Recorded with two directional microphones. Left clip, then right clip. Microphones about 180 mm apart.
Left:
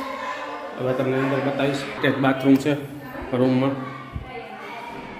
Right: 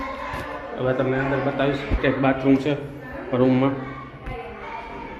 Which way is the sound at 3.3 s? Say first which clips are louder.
Right 1 dB; 15° left (ahead or behind).